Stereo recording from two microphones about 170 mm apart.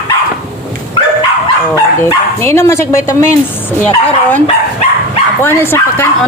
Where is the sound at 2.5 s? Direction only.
15° left (ahead or behind).